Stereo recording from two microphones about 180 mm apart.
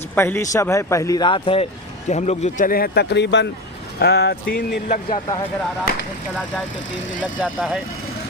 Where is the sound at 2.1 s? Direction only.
40° left (ahead or behind); by 3.4 s 75° left (ahead or behind).